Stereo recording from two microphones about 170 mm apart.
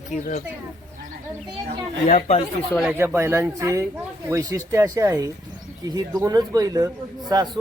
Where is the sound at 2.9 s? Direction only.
15° right (ahead or behind).